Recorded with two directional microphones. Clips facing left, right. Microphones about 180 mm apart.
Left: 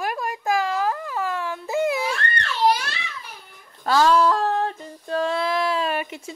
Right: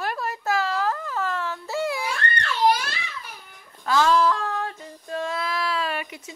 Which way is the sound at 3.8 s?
40° left (ahead or behind).